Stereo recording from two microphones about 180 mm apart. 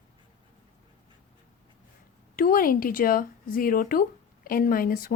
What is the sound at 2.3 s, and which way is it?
Speech, 50° left (ahead or behind).